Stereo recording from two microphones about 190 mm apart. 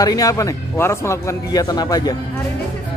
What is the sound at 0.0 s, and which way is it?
A man's voice, 20° left (ahead or behind).